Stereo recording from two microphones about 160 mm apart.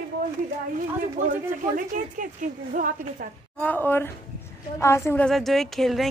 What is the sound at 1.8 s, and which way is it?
A woman's voice, 55° right (ahead or behind).